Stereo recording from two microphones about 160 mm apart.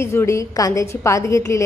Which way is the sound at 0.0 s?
15° left (ahead or behind).